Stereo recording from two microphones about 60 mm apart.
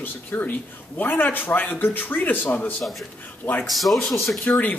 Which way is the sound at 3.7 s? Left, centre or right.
Centre.